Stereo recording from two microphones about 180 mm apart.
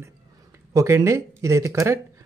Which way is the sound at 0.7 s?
15° right (ahead or behind).